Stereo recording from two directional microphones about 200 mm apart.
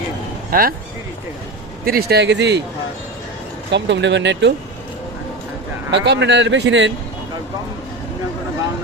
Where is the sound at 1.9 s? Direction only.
50° right (ahead or behind).